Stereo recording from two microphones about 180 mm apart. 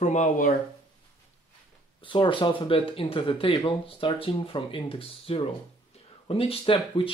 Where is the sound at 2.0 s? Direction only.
30° left (ahead or behind).